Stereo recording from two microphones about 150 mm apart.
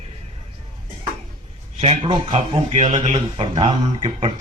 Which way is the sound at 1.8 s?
40° right (ahead or behind).